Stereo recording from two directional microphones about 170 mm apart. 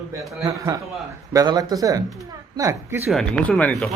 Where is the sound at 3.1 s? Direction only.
5° left (ahead or behind).